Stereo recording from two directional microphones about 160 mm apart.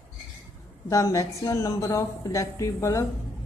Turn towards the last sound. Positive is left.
turn(degrees=20)  # may be behind; listen again after turning